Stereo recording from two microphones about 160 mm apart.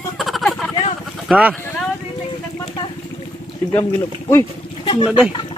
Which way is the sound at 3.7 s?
15° left (ahead or behind).